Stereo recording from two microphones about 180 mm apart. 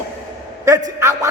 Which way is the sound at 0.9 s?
15° right (ahead or behind).